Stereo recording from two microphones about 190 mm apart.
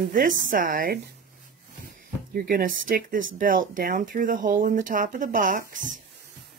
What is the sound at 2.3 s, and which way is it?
Speech, 50° right (ahead or behind).